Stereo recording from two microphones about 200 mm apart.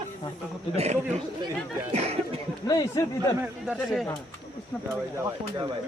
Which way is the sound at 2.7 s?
15° left (ahead or behind).